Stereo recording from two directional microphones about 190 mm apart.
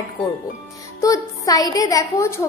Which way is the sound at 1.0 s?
20° left (ahead or behind).